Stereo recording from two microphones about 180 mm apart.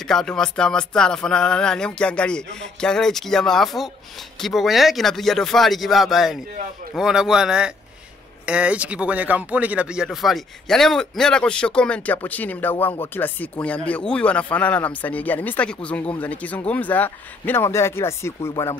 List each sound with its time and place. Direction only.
0.0 s speech: 5° left (ahead or behind)